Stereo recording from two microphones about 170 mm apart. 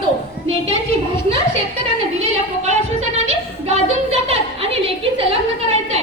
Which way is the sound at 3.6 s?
35° right (ahead or behind).